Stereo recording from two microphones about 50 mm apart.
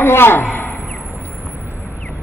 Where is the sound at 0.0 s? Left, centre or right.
Left.